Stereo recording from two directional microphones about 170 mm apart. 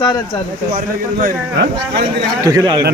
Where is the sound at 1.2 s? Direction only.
60° right (ahead or behind).